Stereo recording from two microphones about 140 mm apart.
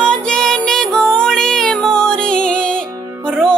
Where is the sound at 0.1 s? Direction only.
5° left (ahead or behind).